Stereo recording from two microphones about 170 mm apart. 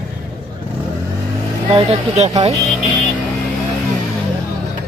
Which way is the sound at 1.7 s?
35° right (ahead or behind).